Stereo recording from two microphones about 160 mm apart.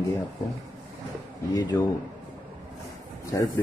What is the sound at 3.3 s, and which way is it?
Speech, 20° left (ahead or behind).